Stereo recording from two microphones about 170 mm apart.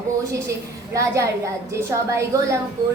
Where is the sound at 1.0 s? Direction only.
15° right (ahead or behind).